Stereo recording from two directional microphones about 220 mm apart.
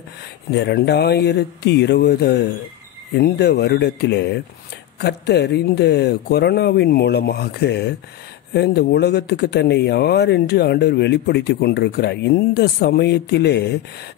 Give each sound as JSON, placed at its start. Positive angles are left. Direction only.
{"t": 0.5, "sound": "speech", "side_deg": 50}